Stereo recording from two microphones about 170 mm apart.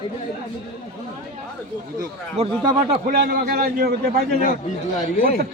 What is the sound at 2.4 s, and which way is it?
Speech, 35° right (ahead or behind).